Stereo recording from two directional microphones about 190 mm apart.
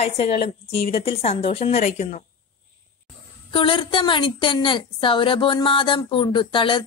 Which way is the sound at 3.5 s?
25° left (ahead or behind).